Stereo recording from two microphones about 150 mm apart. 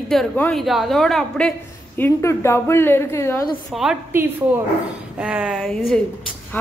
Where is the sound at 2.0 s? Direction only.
20° left (ahead or behind).